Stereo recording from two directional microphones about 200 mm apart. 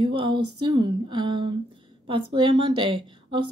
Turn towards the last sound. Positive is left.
turn(degrees=-25)  # may be behind; listen again after turning